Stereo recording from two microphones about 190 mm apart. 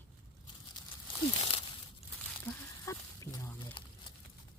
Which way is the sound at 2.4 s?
15° left (ahead or behind).